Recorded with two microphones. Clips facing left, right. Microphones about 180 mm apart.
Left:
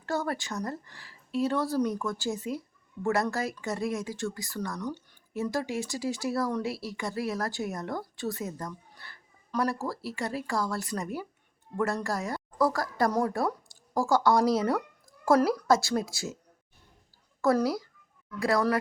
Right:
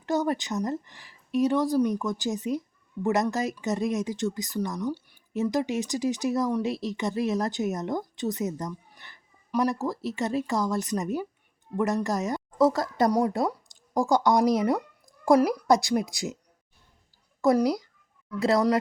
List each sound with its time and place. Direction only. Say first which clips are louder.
0.0 s a woman's voice: right 5 dB; 20° right (ahead or behind)
17.4 s a woman's voice: right 3 dB; 15° right (ahead or behind)